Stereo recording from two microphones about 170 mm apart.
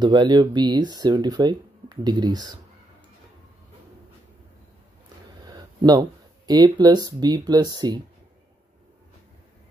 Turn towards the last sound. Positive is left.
turn(degrees=-25)  # may be behind; listen again after turning